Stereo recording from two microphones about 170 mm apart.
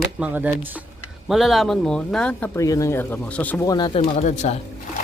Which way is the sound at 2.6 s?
20° left (ahead or behind).